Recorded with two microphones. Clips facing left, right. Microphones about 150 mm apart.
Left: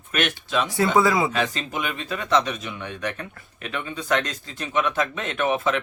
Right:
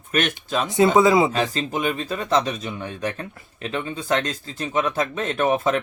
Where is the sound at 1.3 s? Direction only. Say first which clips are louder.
Right 2 dB; 30° right (ahead or behind).